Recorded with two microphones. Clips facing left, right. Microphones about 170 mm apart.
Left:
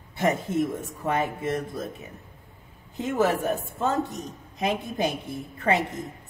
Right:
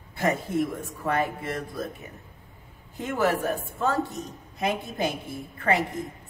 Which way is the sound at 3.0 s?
20° left (ahead or behind).